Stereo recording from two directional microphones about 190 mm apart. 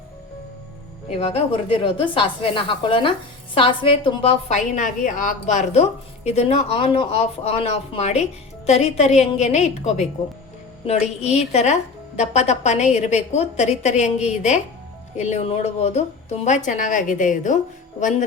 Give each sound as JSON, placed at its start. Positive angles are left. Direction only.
{"t": 1.2, "sound": "a woman's voice", "side_deg": 30}